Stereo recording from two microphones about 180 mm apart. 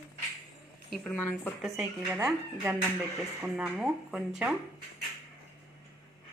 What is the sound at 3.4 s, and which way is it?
A woman's voice, 5° right (ahead or behind).